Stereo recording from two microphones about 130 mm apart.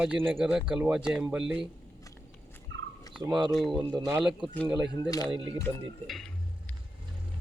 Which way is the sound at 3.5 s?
Centre (ahead or behind).